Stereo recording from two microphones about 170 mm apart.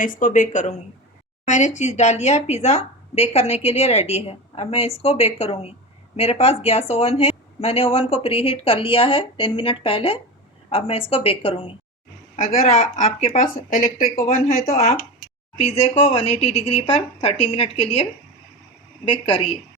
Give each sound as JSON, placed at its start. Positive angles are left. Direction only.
{"t": 0.0, "sound": "speech", "side_deg": 50}
{"t": 12.4, "sound": "speech", "side_deg": 45}